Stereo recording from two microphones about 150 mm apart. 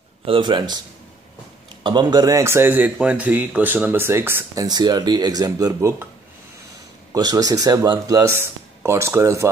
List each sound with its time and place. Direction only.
0.2 s speech: 35° right (ahead or behind)
1.8 s speech: 30° right (ahead or behind); by 4.6 s 15° right (ahead or behind)
4.6 s speech: 25° right (ahead or behind)
7.1 s speech: 25° right (ahead or behind)